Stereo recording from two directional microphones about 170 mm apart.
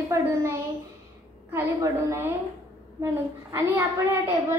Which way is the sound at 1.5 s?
15° right (ahead or behind).